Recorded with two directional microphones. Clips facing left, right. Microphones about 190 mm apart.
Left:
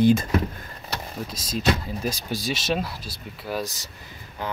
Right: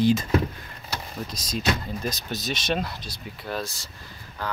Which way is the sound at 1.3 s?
5° left (ahead or behind).